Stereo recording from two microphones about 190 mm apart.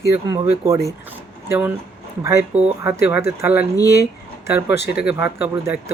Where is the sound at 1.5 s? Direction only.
10° right (ahead or behind).